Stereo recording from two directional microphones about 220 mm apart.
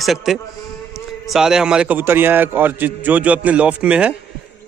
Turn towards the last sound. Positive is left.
turn(degrees=-5)  # may be behind; listen again after turning